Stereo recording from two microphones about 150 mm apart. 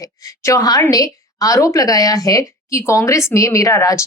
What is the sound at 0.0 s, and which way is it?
A woman's voice, 20° left (ahead or behind).